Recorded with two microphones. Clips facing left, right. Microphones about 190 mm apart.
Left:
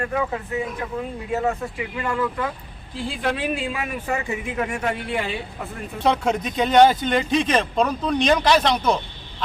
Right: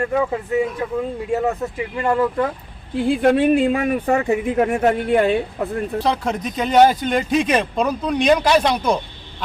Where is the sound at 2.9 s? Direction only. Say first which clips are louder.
Right 10 dB; 55° right (ahead or behind).